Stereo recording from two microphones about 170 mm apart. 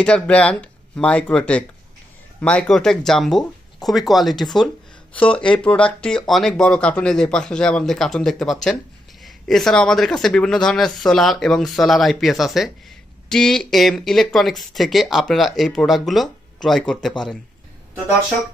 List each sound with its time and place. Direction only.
0.0 s speech: 5° left (ahead or behind)